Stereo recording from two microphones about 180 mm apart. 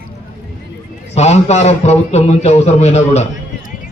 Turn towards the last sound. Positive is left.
turn(degrees=40)  # may be behind; listen again after turning